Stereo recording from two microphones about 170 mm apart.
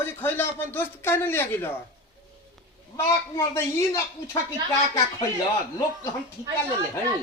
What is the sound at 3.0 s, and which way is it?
A man's voice, 15° left (ahead or behind).